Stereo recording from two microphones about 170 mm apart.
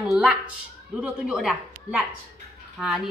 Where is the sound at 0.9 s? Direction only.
5° right (ahead or behind).